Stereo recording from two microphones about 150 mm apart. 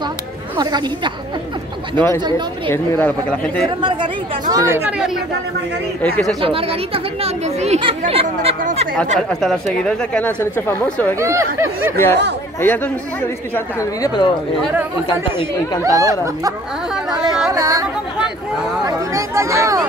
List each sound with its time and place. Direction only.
0.6 s speech: 25° right (ahead or behind)
2.0 s speech: 15° left (ahead or behind)
2.2 s speech: 30° right (ahead or behind)
2.7 s speech: 15° left (ahead or behind)
3.6 s speech: 30° right (ahead or behind)
4.9 s speech: 5° right (ahead or behind)
6.0 s speech: 10° left (ahead or behind)
6.4 s speech: 40° right (ahead or behind)
9.3 s speech: centre (ahead or behind)
11.1 s speech: 20° right (ahead or behind)
12.0 s speech: 15° left (ahead or behind)
15.8 s speech: 20° right (ahead or behind)
17.5 s a sound: 25° right (ahead or behind)
18.9 s speech: 20° right (ahead or behind)